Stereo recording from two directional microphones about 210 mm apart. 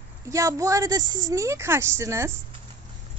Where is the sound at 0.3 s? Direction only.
15° right (ahead or behind).